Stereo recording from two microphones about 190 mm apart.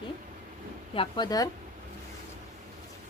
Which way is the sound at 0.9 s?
25° left (ahead or behind).